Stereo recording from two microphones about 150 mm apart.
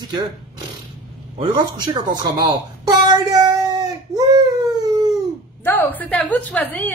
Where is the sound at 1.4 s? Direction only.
30° right (ahead or behind).